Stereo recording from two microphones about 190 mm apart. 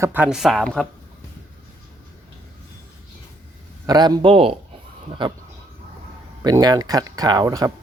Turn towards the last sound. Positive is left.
turn(degrees=-20)  # may be behind; listen again after turning